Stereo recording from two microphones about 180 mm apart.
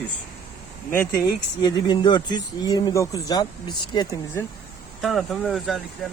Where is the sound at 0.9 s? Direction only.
15° left (ahead or behind).